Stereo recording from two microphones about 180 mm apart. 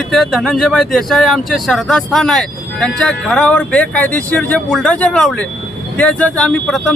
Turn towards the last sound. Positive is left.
turn(degrees=5)  # may be behind; listen again after turning